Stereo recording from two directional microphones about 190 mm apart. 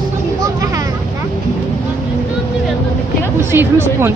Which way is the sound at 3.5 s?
10° right (ahead or behind).